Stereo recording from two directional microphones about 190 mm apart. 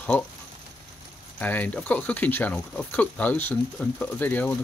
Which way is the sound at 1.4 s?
10° left (ahead or behind).